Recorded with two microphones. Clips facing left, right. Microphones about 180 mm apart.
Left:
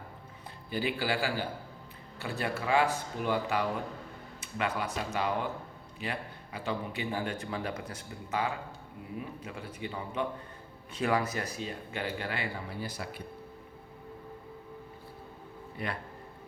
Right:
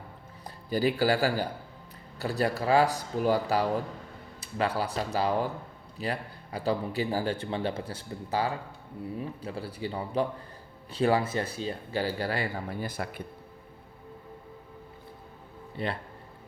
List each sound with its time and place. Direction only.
0.7 s a man's voice: 40° right (ahead or behind)
15.7 s speech: 30° right (ahead or behind)